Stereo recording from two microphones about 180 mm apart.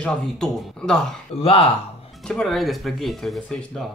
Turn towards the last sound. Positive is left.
turn(degrees=0)  # may be behind; listen again after turning